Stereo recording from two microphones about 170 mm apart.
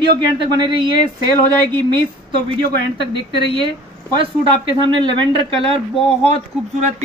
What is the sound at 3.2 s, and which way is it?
Speech, 25° right (ahead or behind).